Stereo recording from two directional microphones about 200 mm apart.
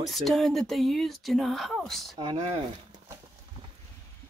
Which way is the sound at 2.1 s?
25° right (ahead or behind).